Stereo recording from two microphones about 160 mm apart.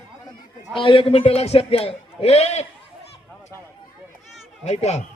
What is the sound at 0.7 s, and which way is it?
A man's voice, 30° left (ahead or behind).